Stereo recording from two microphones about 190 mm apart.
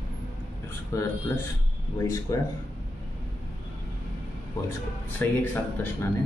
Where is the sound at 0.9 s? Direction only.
15° left (ahead or behind).